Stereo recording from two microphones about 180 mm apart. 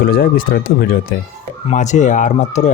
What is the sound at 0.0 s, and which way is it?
Speech, 60° left (ahead or behind).